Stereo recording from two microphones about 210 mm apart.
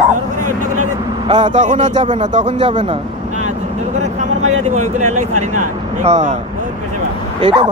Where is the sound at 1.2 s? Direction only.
30° right (ahead or behind).